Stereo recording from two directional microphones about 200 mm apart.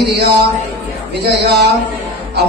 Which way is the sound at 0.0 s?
55° right (ahead or behind).